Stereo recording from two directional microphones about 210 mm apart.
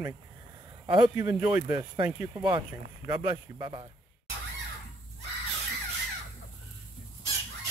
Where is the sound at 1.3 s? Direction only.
5° right (ahead or behind).